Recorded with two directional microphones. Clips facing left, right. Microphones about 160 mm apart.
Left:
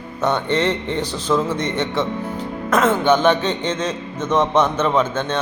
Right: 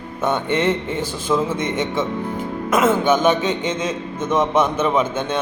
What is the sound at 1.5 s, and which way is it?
Speech, 50° right (ahead or behind).